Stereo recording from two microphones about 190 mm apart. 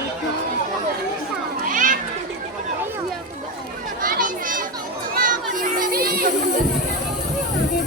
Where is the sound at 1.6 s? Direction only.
45° right (ahead or behind).